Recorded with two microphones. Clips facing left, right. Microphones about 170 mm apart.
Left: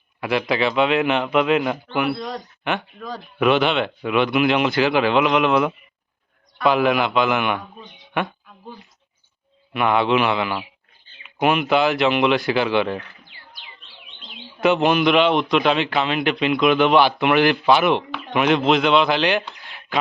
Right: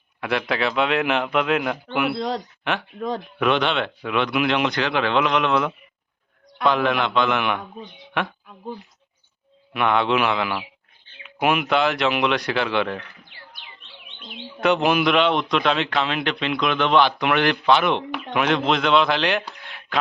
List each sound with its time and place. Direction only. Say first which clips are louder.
0.2 s a man's voice: left 3 dB; centre (ahead or behind)
2.1 s speech: right 4 dB; 25° right (ahead or behind)
3.3 s a man's voice: left 4 dB; 5° left (ahead or behind)
9.7 s a man's voice: left 2 dB; 5° left (ahead or behind)
14.6 s a man's voice: left 2 dB; centre (ahead or behind)